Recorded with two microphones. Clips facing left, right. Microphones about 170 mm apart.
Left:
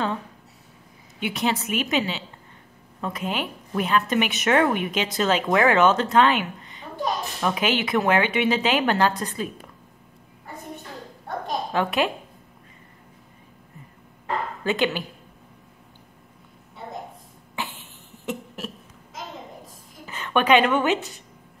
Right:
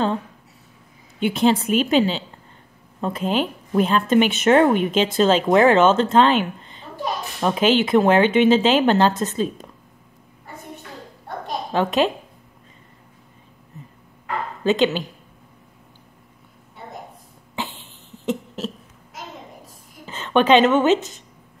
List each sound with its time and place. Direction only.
1.2 s a woman's voice: 30° right (ahead or behind)
11.7 s a woman's voice: 20° right (ahead or behind)
14.6 s a woman's voice: 20° right (ahead or behind)
17.6 s cough: 20° right (ahead or behind)
20.1 s a woman's voice: 25° right (ahead or behind)